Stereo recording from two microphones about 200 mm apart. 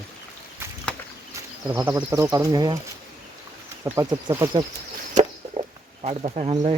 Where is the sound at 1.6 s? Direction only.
15° right (ahead or behind).